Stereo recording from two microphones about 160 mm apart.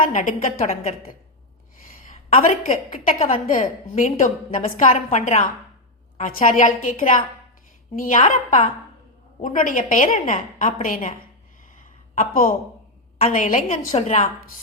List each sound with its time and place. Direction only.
0.1 s a woman's voice: 55° left (ahead or behind)
2.3 s a woman's voice: 45° left (ahead or behind)
10.6 s a woman's voice: 40° left (ahead or behind)
10.8 s a woman's voice: 60° left (ahead or behind)
12.1 s a woman's voice: 60° left (ahead or behind); by 14.3 s 45° left (ahead or behind)